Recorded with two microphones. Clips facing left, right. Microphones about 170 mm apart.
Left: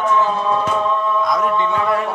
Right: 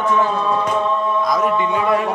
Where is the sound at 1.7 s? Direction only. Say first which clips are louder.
Right 1 dB; 15° right (ahead or behind).